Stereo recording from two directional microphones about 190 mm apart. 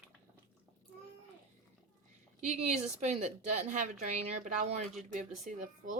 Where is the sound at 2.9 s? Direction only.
35° right (ahead or behind).